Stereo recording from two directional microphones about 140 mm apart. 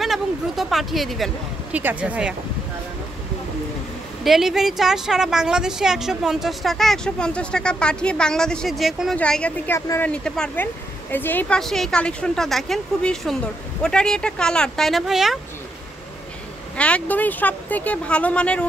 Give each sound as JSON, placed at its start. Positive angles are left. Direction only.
{"t": 0.0, "sound": "speech", "side_deg": 0}
{"t": 1.7, "sound": "speech", "side_deg": -10}
{"t": 4.2, "sound": "speech", "side_deg": 0}
{"t": 9.8, "sound": "speech", "side_deg": 20}
{"t": 10.0, "sound": "speech", "side_deg": 5}
{"t": 16.7, "sound": "speech", "side_deg": 10}